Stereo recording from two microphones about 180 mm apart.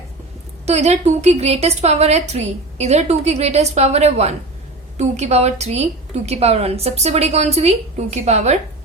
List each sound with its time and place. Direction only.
0.6 s a woman's voice: 40° right (ahead or behind)